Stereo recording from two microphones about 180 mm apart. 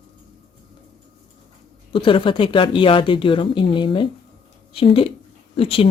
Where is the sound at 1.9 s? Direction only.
30° left (ahead or behind).